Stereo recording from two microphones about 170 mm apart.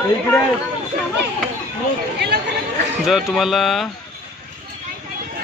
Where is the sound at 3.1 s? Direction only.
Centre (ahead or behind).